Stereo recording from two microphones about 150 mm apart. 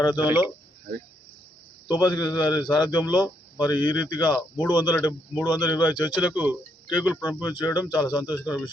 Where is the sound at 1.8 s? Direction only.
30° left (ahead or behind).